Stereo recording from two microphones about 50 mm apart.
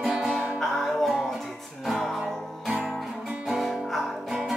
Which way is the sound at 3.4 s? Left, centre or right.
Centre.